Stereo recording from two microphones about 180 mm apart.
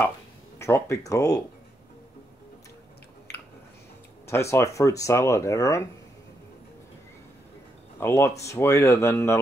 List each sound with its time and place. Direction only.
0.6 s speech: 15° left (ahead or behind)
4.3 s speech: 15° left (ahead or behind)
8.0 s speech: 15° left (ahead or behind)